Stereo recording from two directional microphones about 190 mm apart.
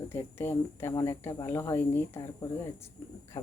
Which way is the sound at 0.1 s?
10° left (ahead or behind).